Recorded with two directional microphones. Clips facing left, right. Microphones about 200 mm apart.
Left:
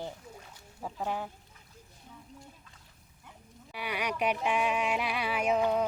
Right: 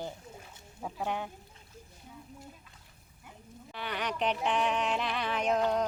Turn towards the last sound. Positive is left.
turn(degrees=5)  # may be behind; listen again after turning